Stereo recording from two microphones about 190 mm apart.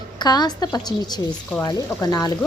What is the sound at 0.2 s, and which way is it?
A woman's voice, 20° left (ahead or behind).